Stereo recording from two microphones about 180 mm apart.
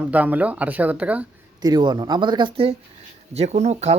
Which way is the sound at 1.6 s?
25° right (ahead or behind).